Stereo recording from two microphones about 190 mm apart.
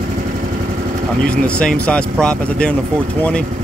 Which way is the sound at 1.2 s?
5° left (ahead or behind).